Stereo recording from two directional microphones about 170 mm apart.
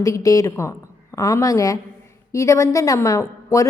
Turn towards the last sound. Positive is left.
turn(degrees=20)  # may be behind; listen again after turning